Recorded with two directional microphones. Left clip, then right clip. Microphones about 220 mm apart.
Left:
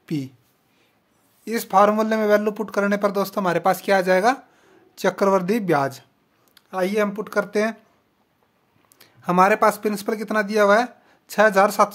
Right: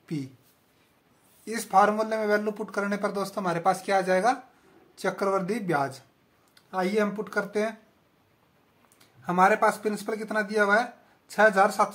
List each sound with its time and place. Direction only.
0.0 s speech: 55° left (ahead or behind)
1.4 s speech: 50° left (ahead or behind)
8.9 s speech: 55° left (ahead or behind)